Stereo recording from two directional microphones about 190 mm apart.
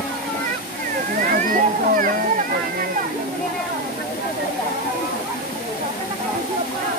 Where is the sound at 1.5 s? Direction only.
45° right (ahead or behind).